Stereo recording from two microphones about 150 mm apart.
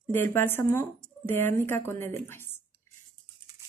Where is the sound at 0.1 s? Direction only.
15° left (ahead or behind).